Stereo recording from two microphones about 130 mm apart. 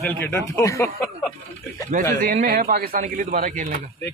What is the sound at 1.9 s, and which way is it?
Speech, 70° right (ahead or behind).